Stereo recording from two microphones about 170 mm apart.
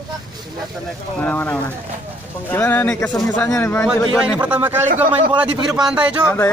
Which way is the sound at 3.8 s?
Centre (ahead or behind).